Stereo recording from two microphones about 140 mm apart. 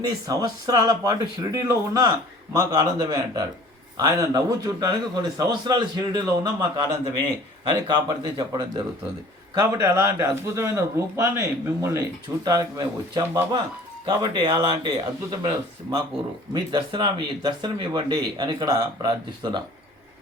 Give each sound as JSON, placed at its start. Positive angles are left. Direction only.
{"t": 0.3, "sound": "speech", "side_deg": -25}
{"t": 7.9, "sound": "speech", "side_deg": -35}
{"t": 16.6, "sound": "speech", "side_deg": -35}